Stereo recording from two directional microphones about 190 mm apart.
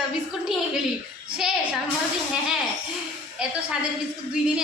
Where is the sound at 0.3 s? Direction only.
5° right (ahead or behind).